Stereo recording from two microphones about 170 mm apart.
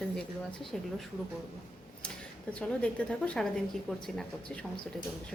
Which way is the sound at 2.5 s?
5° left (ahead or behind).